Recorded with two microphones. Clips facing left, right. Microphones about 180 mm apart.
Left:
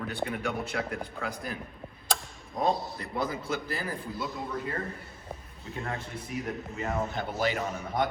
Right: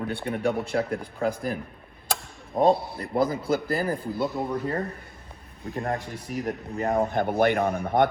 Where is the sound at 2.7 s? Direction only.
55° right (ahead or behind).